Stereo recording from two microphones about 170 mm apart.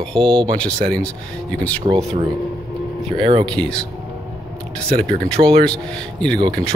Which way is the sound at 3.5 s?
5° left (ahead or behind).